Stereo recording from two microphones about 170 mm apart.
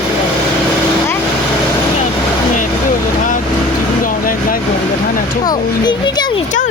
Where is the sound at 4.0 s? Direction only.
55° left (ahead or behind).